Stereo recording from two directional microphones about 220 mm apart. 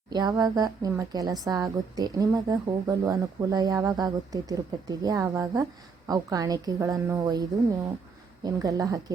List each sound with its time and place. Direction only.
0.1 s a woman's voice: 20° right (ahead or behind)